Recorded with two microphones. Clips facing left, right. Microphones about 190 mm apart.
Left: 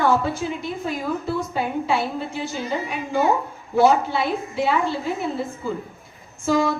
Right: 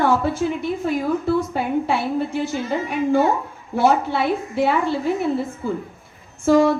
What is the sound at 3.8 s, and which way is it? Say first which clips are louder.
Speech: left 1 dB; 60° right (ahead or behind).